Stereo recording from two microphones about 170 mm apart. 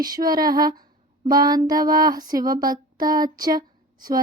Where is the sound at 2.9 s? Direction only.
25° right (ahead or behind).